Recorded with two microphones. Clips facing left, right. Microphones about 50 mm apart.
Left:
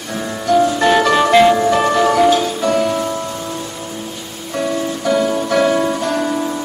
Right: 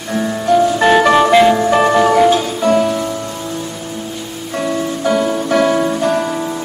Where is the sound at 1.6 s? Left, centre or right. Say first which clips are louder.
Right 2 dB; centre.